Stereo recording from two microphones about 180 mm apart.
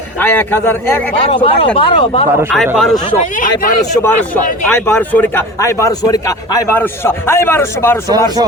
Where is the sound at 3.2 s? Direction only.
50° left (ahead or behind).